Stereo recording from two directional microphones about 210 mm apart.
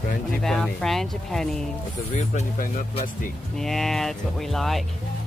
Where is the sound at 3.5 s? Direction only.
Centre (ahead or behind).